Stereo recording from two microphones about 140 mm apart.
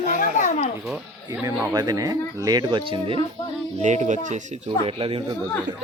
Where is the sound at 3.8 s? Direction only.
60° right (ahead or behind).